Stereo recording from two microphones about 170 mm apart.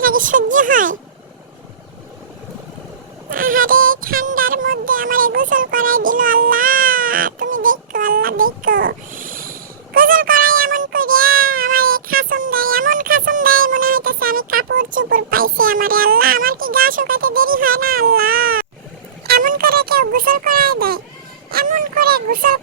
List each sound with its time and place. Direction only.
0.0 s speech: 55° right (ahead or behind)
3.2 s child singing: 55° right (ahead or behind); by 9.0 s 75° right (ahead or behind)
9.1 s a sound: 55° right (ahead or behind)
19.3 s music: 55° right (ahead or behind)
21.5 s speech: 55° right (ahead or behind)